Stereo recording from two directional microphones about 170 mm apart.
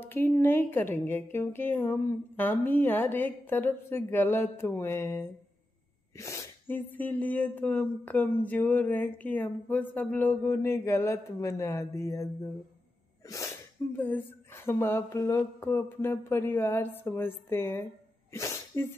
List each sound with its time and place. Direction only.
0.0 s speech: 15° left (ahead or behind)
13.9 s speech: 10° left (ahead or behind)
18.3 s sneeze: 15° left (ahead or behind)